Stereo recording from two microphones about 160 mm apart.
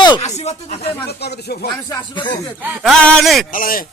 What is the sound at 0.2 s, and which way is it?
Speech, 45° left (ahead or behind).